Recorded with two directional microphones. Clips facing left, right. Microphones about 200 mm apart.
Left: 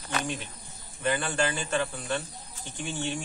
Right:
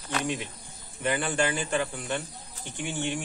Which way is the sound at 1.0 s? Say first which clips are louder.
Right 1 dB; 20° right (ahead or behind).